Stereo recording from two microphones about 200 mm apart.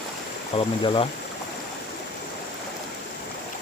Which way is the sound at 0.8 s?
25° left (ahead or behind).